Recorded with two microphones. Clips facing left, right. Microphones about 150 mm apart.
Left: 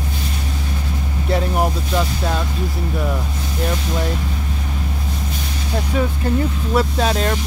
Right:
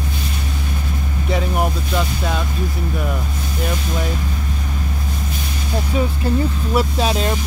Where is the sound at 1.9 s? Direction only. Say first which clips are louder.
Left 1 dB; 5° left (ahead or behind).